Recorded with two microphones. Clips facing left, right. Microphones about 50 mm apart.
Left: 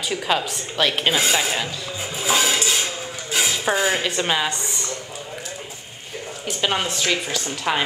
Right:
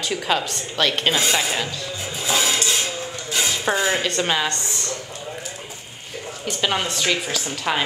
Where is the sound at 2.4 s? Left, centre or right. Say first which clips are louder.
Left 1 dB; centre.